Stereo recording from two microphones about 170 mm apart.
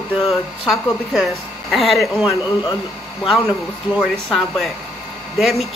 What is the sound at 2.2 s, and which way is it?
Speech, 25° left (ahead or behind).